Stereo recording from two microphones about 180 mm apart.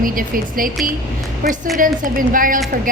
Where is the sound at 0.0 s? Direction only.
50° right (ahead or behind).